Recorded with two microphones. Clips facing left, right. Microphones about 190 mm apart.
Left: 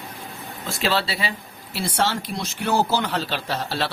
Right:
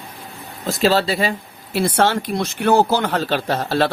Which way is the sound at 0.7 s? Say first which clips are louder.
Right 7 dB; 40° right (ahead or behind).